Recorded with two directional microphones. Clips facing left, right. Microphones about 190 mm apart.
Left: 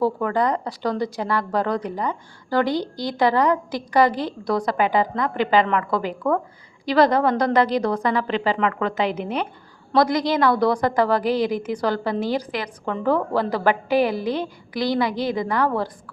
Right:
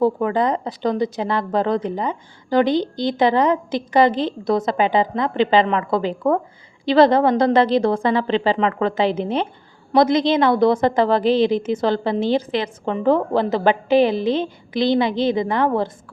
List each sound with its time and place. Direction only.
0.0 s a woman's voice: 20° right (ahead or behind)